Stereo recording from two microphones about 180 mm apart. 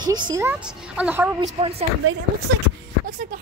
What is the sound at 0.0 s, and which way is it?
Speech, 25° right (ahead or behind).